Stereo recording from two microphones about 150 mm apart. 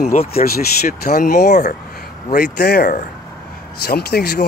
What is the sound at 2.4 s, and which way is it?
Speech, 90° left.